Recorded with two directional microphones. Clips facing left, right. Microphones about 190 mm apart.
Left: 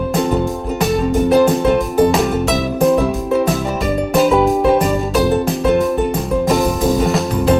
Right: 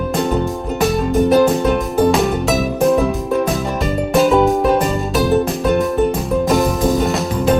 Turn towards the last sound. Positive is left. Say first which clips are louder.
# left 1 dB
turn(degrees=0)  # may be behind; listen again after turning